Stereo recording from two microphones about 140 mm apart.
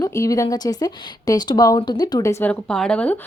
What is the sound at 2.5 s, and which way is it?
Speech, 5° left (ahead or behind).